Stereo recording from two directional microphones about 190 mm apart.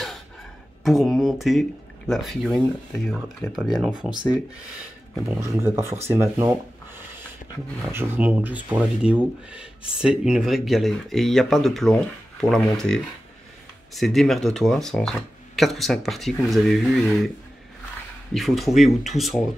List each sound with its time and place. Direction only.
0.8 s speech: centre (ahead or behind)
5.4 s speech: 15° right (ahead or behind)
7.9 s speech: 10° right (ahead or behind)
18.3 s speech: centre (ahead or behind)